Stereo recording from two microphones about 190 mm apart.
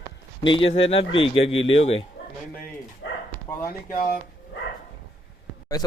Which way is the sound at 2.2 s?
60° left (ahead or behind).